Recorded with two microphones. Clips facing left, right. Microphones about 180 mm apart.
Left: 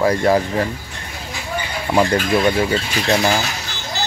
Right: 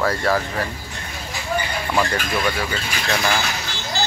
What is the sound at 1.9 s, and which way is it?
Speech, 25° left (ahead or behind).